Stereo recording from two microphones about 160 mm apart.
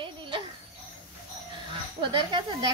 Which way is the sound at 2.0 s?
30° right (ahead or behind).